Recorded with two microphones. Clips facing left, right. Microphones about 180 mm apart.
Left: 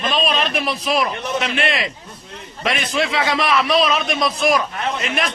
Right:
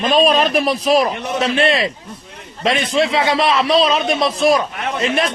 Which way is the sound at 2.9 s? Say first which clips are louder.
Right 4 dB; 30° right (ahead or behind).